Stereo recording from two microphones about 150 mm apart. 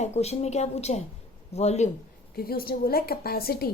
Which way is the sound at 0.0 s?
45° left (ahead or behind).